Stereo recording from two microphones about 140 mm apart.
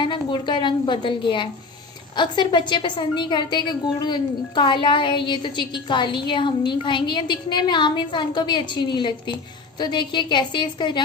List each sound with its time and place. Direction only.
0.0 s a woman's voice: 35° left (ahead or behind)